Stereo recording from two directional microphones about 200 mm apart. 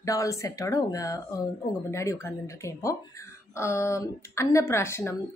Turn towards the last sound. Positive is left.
turn(degrees=15)  # may be behind; listen again after turning